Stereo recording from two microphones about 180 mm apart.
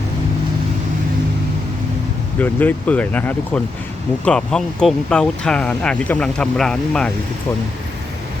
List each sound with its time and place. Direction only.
2.4 s speech: 10° left (ahead or behind)